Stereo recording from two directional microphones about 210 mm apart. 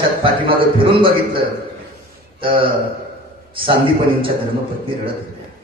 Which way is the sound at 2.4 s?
25° right (ahead or behind).